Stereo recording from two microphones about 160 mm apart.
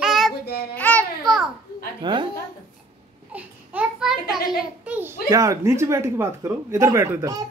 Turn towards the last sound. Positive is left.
turn(degrees=-20)  # may be behind; listen again after turning